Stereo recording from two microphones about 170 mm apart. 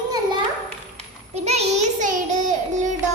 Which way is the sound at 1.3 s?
40° right (ahead or behind).